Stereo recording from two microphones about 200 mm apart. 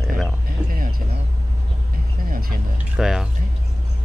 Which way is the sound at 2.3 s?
45° right (ahead or behind).